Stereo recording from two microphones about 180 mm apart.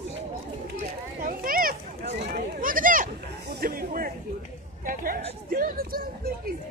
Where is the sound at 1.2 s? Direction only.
50° right (ahead or behind).